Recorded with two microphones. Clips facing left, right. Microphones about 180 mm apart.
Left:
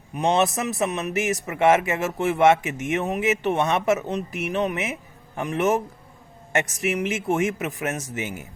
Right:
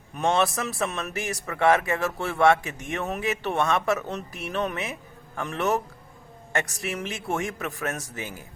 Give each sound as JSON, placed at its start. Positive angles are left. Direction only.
{"t": 0.2, "sound": "a man's voice", "side_deg": 20}